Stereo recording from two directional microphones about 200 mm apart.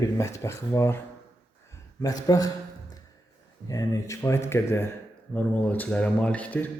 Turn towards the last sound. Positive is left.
turn(degrees=10)  # may be behind; listen again after turning